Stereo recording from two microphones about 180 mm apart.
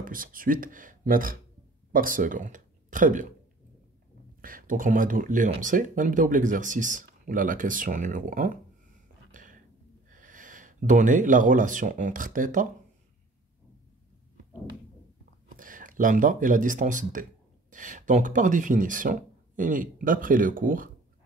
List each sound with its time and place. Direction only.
0.0 s speech: 50° right (ahead or behind)
4.4 s speech: 50° right (ahead or behind)
9.3 s a sound: 45° right (ahead or behind)
10.1 s speech: 45° right (ahead or behind)
15.5 s speech: 50° right (ahead or behind)